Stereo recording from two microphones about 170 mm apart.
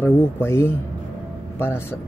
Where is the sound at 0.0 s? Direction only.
15° left (ahead or behind).